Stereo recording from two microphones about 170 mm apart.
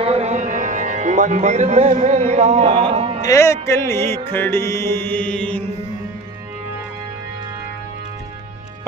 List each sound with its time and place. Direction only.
0.0 s music: 40° right (ahead or behind)
3.3 s music: 15° left (ahead or behind)